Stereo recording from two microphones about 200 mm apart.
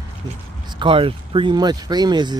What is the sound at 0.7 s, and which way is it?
Speech, 25° right (ahead or behind).